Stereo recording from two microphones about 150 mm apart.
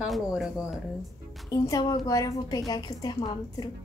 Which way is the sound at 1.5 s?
25° left (ahead or behind).